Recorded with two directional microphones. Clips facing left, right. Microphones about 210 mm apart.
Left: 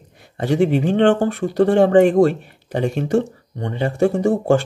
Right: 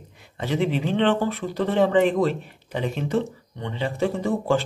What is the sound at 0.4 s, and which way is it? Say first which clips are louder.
Speech: left 7 dB; 50° left (ahead or behind).